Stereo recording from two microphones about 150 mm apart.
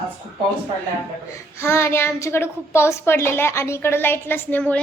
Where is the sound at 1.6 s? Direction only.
15° left (ahead or behind).